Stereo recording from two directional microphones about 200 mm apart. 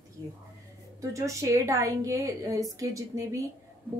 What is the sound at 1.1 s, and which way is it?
A woman's voice, 15° right (ahead or behind).